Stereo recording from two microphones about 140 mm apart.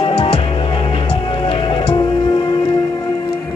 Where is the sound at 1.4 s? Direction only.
40° left (ahead or behind).